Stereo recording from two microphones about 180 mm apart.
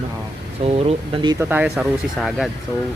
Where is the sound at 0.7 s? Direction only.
30° right (ahead or behind).